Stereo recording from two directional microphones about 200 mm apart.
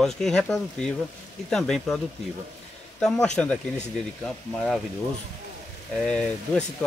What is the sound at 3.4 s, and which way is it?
Speech, 5° left (ahead or behind).